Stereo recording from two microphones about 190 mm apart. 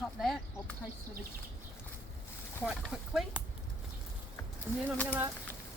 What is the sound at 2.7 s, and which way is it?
Speech, centre (ahead or behind).